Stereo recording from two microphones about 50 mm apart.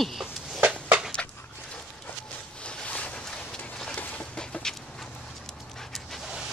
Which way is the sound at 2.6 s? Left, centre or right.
Left.